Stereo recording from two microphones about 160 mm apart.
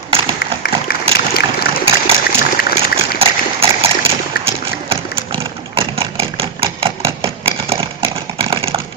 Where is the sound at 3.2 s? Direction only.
35° right (ahead or behind).